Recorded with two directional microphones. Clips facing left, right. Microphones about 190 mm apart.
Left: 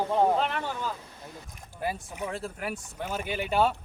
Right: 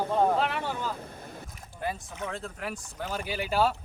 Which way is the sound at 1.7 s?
10° left (ahead or behind).